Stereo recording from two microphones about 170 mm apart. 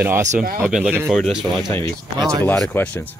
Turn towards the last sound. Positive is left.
turn(degrees=10)  # may be behind; listen again after turning